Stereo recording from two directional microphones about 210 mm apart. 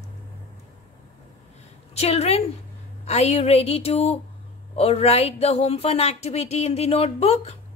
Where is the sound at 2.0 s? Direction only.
30° left (ahead or behind).